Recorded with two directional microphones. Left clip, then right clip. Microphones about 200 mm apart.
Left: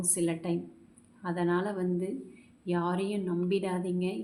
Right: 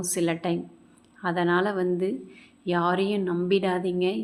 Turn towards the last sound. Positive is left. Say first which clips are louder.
# right 8 dB
turn(degrees=-25)  # may be behind; listen again after turning